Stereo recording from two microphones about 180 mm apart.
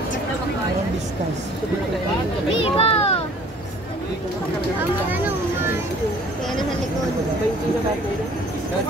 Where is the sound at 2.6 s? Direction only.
30° left (ahead or behind).